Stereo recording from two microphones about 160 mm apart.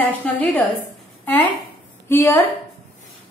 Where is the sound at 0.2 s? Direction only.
5° left (ahead or behind).